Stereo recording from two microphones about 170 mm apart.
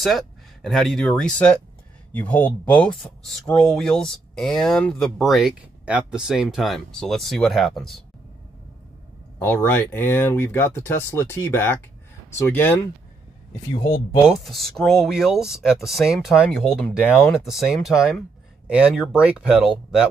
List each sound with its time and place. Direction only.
0.0 s speech: centre (ahead or behind)
9.4 s speech: 15° left (ahead or behind)
13.7 s speech: 25° left (ahead or behind)
14.2 s speech: centre (ahead or behind)